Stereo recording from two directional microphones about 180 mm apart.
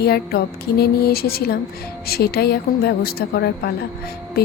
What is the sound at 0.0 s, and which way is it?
A woman's voice, 60° left (ahead or behind).